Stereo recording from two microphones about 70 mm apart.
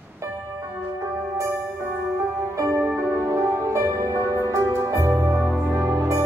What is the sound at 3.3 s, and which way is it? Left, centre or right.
Music, right.